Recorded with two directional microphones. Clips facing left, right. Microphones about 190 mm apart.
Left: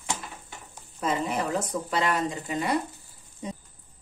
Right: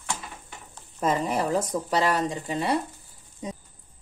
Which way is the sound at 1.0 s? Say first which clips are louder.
Right 3 dB; 45° right (ahead or behind).